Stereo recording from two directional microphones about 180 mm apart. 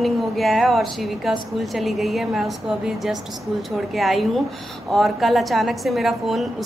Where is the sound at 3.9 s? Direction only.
Centre (ahead or behind).